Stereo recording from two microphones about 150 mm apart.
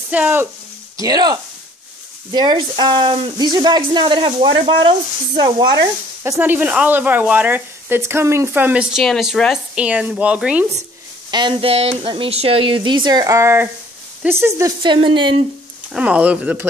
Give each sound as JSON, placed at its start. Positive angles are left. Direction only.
{"t": 0.1, "sound": "speech", "side_deg": -10}
{"t": 0.9, "sound": "speech", "side_deg": -25}
{"t": 11.2, "sound": "speech", "side_deg": -30}
{"t": 14.8, "sound": "speech", "side_deg": -30}
{"t": 15.9, "sound": "speech", "side_deg": -10}